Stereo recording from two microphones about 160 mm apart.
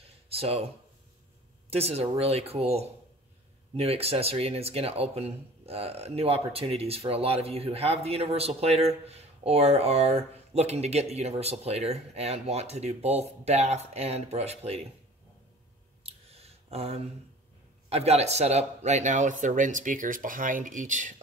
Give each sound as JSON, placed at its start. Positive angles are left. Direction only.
{"t": 0.0, "sound": "a sound", "side_deg": -40}
{"t": 1.7, "sound": "speech", "side_deg": -40}
{"t": 16.0, "sound": "clicking", "side_deg": -40}
{"t": 17.8, "sound": "speech", "side_deg": -40}